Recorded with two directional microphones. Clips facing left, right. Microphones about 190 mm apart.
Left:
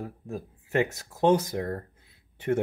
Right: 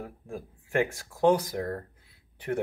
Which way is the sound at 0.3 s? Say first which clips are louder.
Left 1 dB; 20° left (ahead or behind).